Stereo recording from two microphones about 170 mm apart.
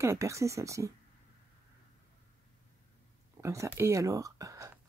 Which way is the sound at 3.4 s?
15° right (ahead or behind).